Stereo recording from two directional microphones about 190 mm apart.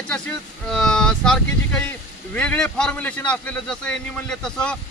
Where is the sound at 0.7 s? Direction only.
5° left (ahead or behind).